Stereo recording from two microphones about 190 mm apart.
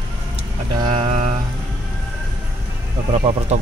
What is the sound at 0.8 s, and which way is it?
Speech, 30° right (ahead or behind).